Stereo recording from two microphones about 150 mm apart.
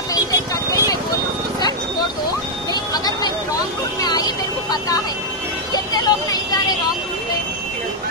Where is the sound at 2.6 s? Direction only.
25° left (ahead or behind).